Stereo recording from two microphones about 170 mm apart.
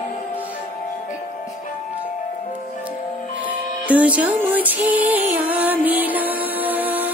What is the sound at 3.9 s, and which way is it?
Music, 10° right (ahead or behind).